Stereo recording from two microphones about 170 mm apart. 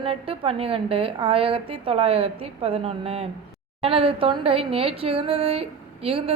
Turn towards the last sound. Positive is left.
turn(degrees=-35)  # may be behind; listen again after turning